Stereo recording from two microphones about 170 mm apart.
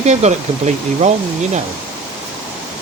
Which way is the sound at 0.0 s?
40° right (ahead or behind).